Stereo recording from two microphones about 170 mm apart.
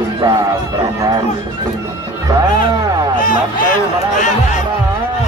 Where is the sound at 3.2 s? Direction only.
50° left (ahead or behind).